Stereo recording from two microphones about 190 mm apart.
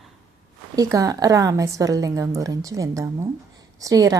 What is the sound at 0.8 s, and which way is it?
A woman's voice, 20° right (ahead or behind).